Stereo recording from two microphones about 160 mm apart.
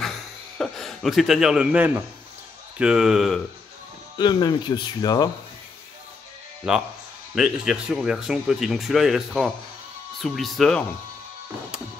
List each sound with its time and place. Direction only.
0.0 s a sound: centre (ahead or behind)
2.8 s speech: 5° right (ahead or behind)
4.2 s speech: 30° left (ahead or behind)
6.7 s speech: 5° right (ahead or behind)